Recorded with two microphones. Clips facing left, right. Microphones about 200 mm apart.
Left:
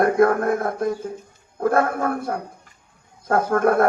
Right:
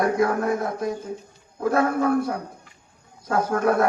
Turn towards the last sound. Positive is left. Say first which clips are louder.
# left 3 dB
turn(degrees=55)  # may be behind; listen again after turning